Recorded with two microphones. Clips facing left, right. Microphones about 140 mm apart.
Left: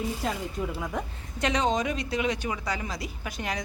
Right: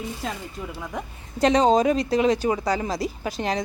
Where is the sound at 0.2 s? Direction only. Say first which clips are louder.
Left 2 dB; 5° left (ahead or behind).